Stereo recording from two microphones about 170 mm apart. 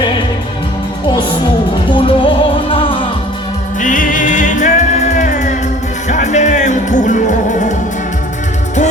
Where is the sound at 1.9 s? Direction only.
30° left (ahead or behind).